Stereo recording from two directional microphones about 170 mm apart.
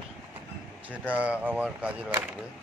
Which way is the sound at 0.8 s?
10° right (ahead or behind).